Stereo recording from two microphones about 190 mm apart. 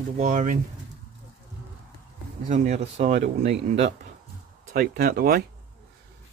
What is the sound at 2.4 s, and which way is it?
Speech, 40° right (ahead or behind).